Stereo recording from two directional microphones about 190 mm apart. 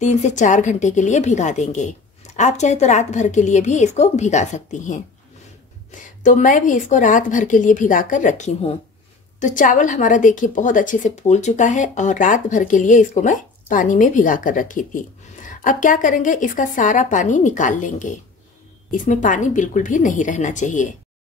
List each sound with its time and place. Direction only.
0.0 s a woman's voice: 40° left (ahead or behind)